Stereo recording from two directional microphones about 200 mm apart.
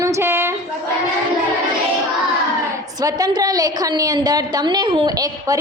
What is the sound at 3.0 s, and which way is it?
A woman's voice, 20° right (ahead or behind).